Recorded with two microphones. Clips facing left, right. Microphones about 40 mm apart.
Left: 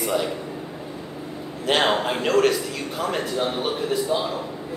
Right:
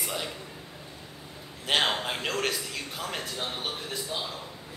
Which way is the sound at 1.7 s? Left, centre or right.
Centre.